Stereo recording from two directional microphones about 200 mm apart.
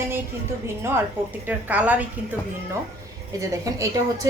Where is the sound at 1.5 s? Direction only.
5° right (ahead or behind).